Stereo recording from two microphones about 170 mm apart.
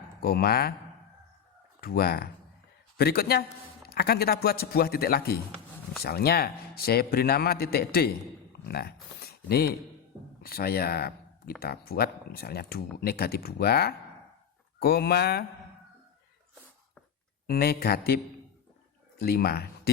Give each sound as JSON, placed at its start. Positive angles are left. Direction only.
{"t": 0.2, "sound": "speech", "side_deg": 65}
{"t": 1.8, "sound": "speech", "side_deg": 60}
{"t": 8.6, "sound": "a sound", "side_deg": 70}
{"t": 10.4, "sound": "speech", "side_deg": 65}
{"t": 17.4, "sound": "speech", "side_deg": 65}
{"t": 19.2, "sound": "speech", "side_deg": 65}